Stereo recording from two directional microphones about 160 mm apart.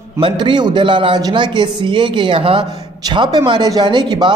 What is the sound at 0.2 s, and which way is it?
A man's voice, 30° right (ahead or behind).